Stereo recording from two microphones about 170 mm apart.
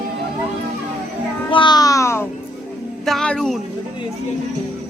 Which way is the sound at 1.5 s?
25° left (ahead or behind).